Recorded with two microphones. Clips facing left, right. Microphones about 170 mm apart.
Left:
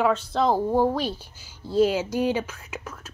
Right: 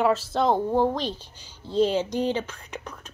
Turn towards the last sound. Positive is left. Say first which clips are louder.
# even
turn(degrees=5)  # may be behind; listen again after turning